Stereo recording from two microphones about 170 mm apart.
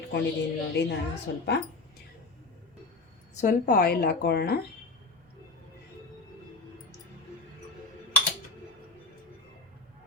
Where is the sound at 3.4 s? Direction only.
50° left (ahead or behind); by 4.6 s 70° left (ahead or behind).